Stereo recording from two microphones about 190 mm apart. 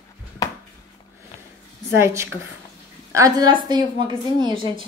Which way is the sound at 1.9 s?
15° right (ahead or behind).